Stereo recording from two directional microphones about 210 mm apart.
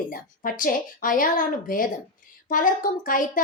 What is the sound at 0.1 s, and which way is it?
A woman's voice, 40° left (ahead or behind).